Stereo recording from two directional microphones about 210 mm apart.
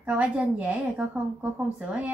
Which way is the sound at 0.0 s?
5° right (ahead or behind).